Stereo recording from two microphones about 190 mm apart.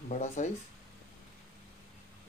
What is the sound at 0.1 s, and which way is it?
Speech, 40° left (ahead or behind).